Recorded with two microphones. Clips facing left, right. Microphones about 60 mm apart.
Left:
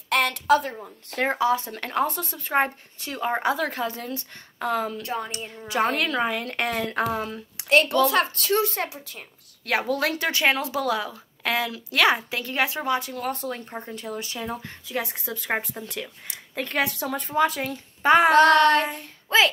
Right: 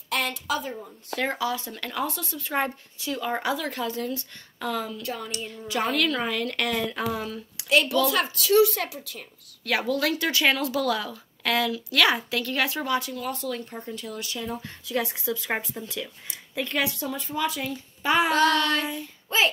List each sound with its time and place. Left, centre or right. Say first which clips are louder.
0.1 s a woman's voice: left 7 dB; left
1.2 s speech: left 5 dB; left
6.7 s a woman's voice: left 2 dB; left
13.1 s a woman's voice: left 1 dB; left
19.2 s a child's voice: left 4 dB; left